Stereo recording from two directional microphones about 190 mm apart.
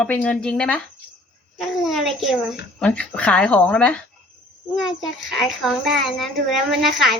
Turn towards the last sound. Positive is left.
turn(degrees=0)  # may be behind; listen again after turning